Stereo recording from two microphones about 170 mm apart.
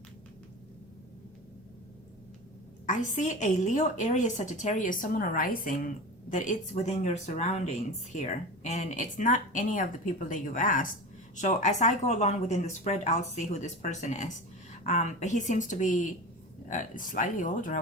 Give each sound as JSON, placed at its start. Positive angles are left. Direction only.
{"t": 2.8, "sound": "a woman's voice", "side_deg": 45}